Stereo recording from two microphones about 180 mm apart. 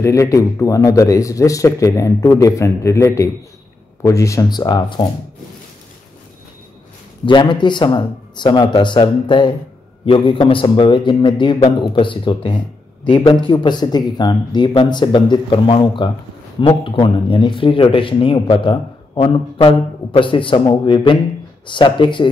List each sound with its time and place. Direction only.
0.0 s a man's voice: 15° left (ahead or behind)
7.2 s a man's voice: 25° left (ahead or behind)